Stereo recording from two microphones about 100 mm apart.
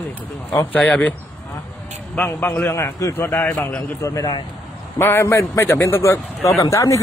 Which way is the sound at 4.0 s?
35° left (ahead or behind).